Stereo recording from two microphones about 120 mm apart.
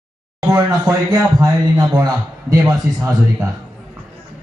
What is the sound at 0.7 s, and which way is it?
A man's voice, 30° right (ahead or behind).